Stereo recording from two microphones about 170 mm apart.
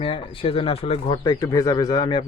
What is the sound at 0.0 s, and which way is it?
Speech, 30° left (ahead or behind).